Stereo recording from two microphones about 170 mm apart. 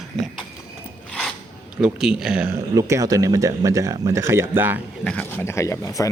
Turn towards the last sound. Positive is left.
turn(degrees=20)  # may be behind; listen again after turning